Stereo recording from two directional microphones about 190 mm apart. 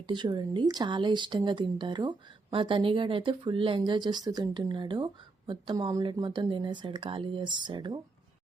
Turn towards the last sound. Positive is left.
turn(degrees=-25)  # may be behind; listen again after turning